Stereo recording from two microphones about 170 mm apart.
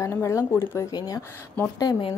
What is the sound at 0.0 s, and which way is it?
A woman's voice, 15° left (ahead or behind).